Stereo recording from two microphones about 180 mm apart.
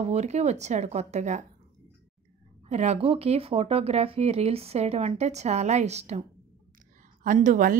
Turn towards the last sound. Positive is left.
turn(degrees=-45)  # may be behind; listen again after turning